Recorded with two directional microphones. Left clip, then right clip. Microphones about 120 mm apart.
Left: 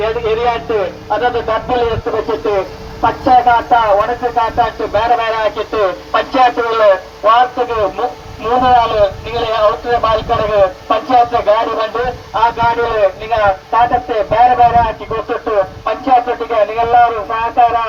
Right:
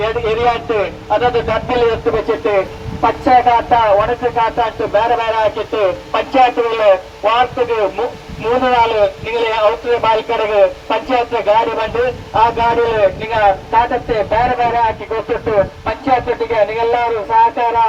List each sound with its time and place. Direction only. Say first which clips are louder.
0.0 s speech: even; 25° right (ahead or behind)